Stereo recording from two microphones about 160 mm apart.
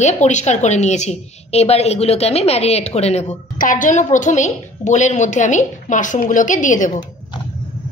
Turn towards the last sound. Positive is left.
turn(degrees=50)  # may be behind; listen again after turning